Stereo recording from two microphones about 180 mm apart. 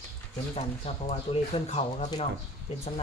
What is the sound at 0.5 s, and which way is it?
Speech, 35° left (ahead or behind).